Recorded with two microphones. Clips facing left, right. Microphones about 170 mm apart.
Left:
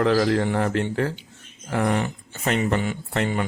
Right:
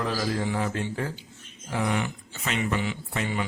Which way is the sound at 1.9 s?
45° left (ahead or behind).